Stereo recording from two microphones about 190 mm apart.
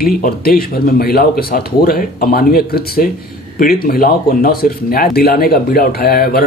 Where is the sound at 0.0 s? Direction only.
50° left (ahead or behind).